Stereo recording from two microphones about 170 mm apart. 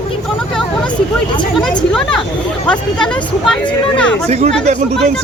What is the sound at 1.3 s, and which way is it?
Speech, 25° left (ahead or behind).